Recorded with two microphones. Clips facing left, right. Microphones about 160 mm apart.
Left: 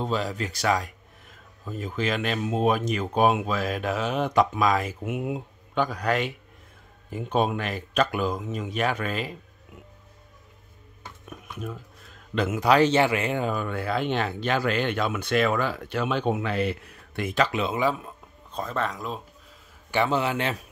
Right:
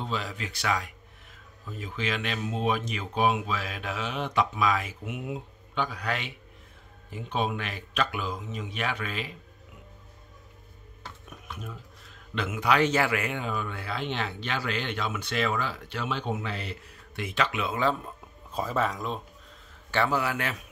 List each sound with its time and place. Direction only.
0.0 s a man's voice: 40° left (ahead or behind)
12.4 s a man's voice: 40° left (ahead or behind)
13.4 s speech: 45° left (ahead or behind)
17.7 s speech: 10° left (ahead or behind)
18.5 s speech: 5° right (ahead or behind)
19.9 s a man's voice: 20° left (ahead or behind)